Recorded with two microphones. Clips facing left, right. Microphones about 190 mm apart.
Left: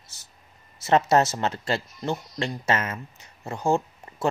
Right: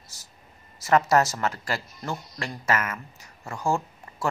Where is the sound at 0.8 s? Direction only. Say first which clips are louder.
Left 1 dB; 25° left (ahead or behind).